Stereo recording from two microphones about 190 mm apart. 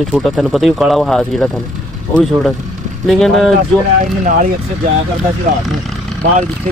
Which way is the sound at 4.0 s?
45° right (ahead or behind).